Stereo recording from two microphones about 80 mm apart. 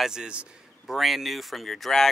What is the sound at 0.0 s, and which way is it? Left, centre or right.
Speech, centre.